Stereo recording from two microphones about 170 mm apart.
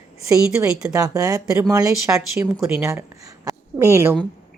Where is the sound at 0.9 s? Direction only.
20° right (ahead or behind).